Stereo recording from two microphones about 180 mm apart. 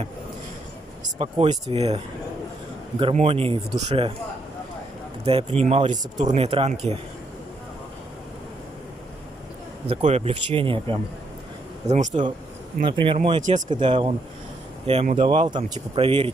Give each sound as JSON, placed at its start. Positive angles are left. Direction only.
{"t": 1.1, "sound": "speech", "side_deg": -35}
{"t": 3.0, "sound": "speech", "side_deg": -30}
{"t": 5.2, "sound": "speech", "side_deg": -35}
{"t": 9.8, "sound": "speech", "side_deg": -35}
{"t": 11.9, "sound": "speech", "side_deg": -45}
{"t": 12.8, "sound": "speech", "side_deg": -30}
{"t": 13.4, "sound": "speech", "side_deg": -45}
{"t": 13.7, "sound": "speech", "side_deg": -25}